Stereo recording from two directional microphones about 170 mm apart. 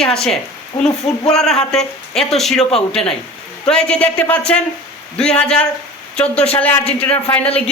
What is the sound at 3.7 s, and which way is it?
Speech, 5° left (ahead or behind).